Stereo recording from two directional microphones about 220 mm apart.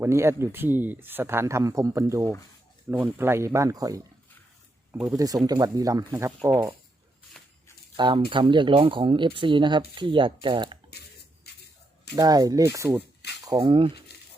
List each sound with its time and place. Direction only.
0.0 s speech: 10° right (ahead or behind)
7.3 s a sound: 5° left (ahead or behind)
7.9 s speech: 20° right (ahead or behind)
12.1 s speech: 15° right (ahead or behind)